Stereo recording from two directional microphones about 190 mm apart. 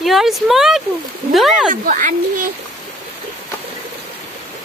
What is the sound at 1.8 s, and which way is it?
Speech, 45° right (ahead or behind).